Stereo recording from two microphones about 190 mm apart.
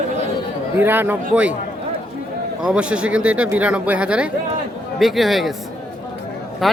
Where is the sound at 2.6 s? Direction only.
5° right (ahead or behind).